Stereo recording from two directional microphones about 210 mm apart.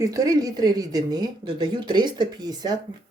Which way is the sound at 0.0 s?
15° right (ahead or behind).